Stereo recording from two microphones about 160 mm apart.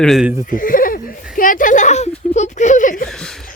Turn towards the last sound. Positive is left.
turn(degrees=55)  # may be behind; listen again after turning